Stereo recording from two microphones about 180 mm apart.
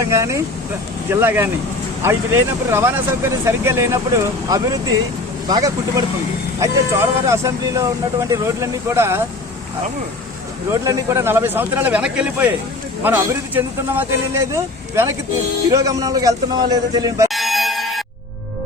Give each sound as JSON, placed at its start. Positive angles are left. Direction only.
{"t": 0.0, "sound": "a man's voice", "side_deg": -15}
{"t": 10.7, "sound": "a man's voice", "side_deg": -15}
{"t": 17.2, "sound": "a sound", "side_deg": 0}